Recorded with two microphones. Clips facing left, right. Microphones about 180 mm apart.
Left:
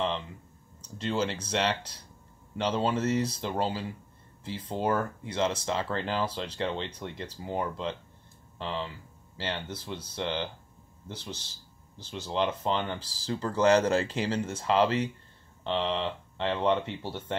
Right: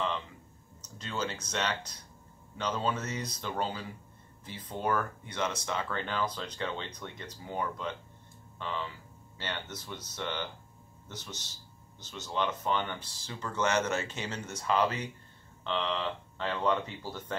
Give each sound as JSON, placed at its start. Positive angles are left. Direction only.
{"t": 0.8, "sound": "speech", "side_deg": 30}